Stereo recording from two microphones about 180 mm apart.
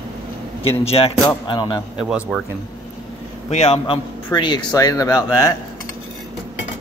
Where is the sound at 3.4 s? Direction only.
35° left (ahead or behind); by 5.5 s 20° left (ahead or behind).